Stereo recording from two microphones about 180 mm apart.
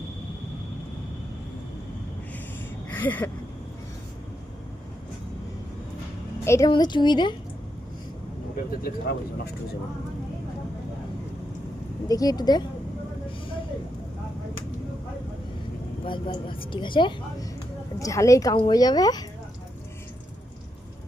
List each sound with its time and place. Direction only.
2.9 s a sound: 10° left (ahead or behind)
6.4 s a woman's voice: 15° left (ahead or behind)
8.8 s speech: 60° left (ahead or behind)
12.0 s a woman's voice: 20° left (ahead or behind)
16.0 s a woman's voice: 30° left (ahead or behind)